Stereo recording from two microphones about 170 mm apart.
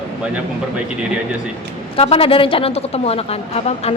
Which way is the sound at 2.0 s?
35° left (ahead or behind).